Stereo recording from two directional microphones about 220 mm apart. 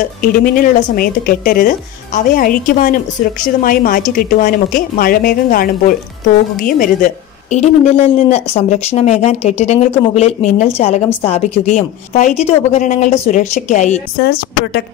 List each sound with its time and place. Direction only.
0.2 s a woman's voice: 40° left (ahead or behind)
14.1 s a woman's voice: 45° left (ahead or behind)